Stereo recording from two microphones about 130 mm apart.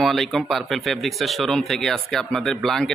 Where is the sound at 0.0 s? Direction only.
Centre (ahead or behind).